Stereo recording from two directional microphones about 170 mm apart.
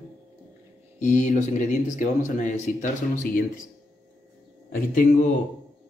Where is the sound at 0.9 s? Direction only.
45° left (ahead or behind).